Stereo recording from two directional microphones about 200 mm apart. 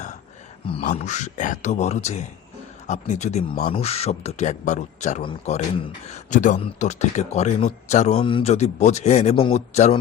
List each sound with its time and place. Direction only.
0.8 s speech: 40° left (ahead or behind)